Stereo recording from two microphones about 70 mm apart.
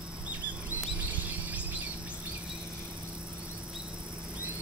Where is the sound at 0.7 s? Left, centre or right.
Right.